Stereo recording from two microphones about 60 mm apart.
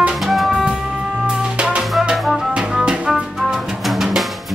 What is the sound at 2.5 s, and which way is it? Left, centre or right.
Drum kit, centre.